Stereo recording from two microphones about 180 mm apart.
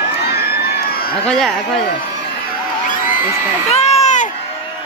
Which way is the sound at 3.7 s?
35° left (ahead or behind).